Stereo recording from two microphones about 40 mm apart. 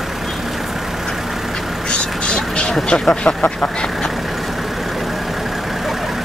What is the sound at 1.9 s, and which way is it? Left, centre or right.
Vehicle, left.